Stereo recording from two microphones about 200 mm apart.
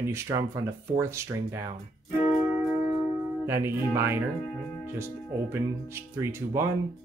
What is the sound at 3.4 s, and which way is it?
Speech, 10° right (ahead or behind).